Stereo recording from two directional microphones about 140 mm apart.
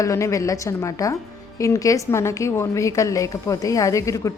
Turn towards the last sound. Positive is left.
turn(degrees=20)  # may be behind; listen again after turning